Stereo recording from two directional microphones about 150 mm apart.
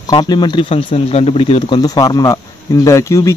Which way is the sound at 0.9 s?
45° left (ahead or behind).